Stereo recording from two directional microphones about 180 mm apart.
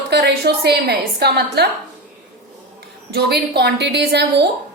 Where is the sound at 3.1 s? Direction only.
65° right (ahead or behind).